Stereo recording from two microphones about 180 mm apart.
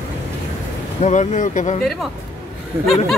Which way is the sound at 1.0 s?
40° left (ahead or behind).